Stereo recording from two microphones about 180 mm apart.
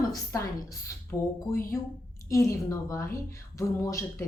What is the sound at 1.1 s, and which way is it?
Speech, 15° left (ahead or behind).